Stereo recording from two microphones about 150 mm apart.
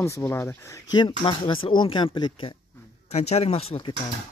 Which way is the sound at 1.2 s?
35° left (ahead or behind).